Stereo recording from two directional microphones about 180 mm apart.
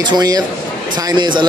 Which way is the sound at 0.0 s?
25° right (ahead or behind).